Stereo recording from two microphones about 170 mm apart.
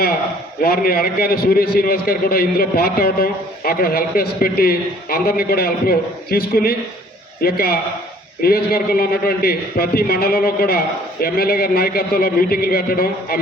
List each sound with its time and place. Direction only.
0.6 s a man's voice: 60° left (ahead or behind)